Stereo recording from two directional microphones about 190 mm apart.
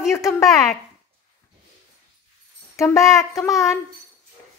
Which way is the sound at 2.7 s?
15° left (ahead or behind).